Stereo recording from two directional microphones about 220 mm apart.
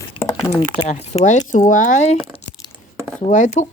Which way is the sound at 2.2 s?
25° left (ahead or behind).